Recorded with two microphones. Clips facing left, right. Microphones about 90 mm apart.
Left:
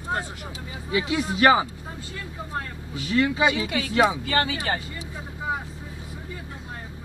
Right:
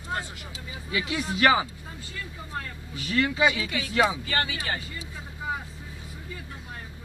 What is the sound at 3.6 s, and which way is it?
Speech, 55° left (ahead or behind).